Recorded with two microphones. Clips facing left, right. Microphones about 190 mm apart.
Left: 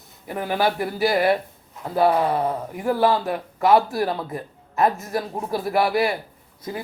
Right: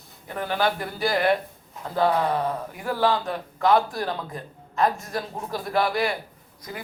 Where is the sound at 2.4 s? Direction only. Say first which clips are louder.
Left 5 dB; 25° left (ahead or behind).